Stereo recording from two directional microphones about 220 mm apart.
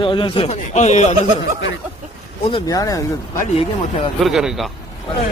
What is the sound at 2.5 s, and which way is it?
Speech, 15° left (ahead or behind).